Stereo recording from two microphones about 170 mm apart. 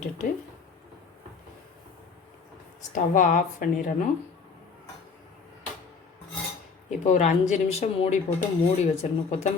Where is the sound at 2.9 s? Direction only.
50° left (ahead or behind).